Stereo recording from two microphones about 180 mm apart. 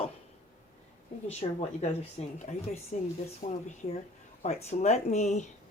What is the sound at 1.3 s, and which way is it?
Speech, 35° left (ahead or behind).